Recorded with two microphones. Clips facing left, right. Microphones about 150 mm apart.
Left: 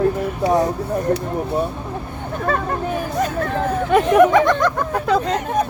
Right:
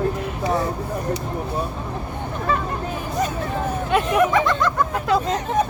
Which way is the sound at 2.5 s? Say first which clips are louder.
Left 4 dB; 60° left (ahead or behind).